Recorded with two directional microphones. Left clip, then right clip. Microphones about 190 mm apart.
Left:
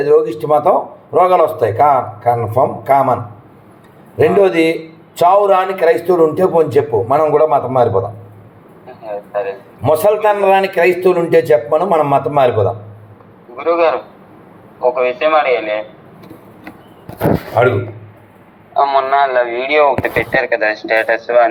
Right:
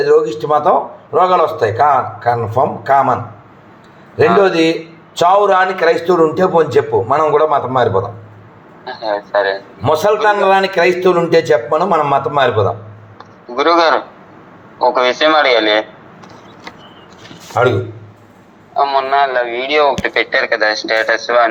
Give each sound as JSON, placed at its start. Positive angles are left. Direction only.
{"t": 0.0, "sound": "a man's voice", "side_deg": 0}
{"t": 4.2, "sound": "a man's voice", "side_deg": 0}
{"t": 9.0, "sound": "a man's voice", "side_deg": -55}
{"t": 9.8, "sound": "a man's voice", "side_deg": -10}
{"t": 13.6, "sound": "speech", "side_deg": -55}
{"t": 18.8, "sound": "a man's voice", "side_deg": -20}